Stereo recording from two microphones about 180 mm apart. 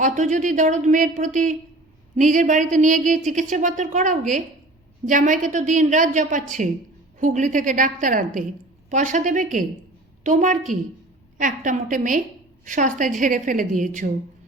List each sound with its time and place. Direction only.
0.0 s speech: 45° right (ahead or behind)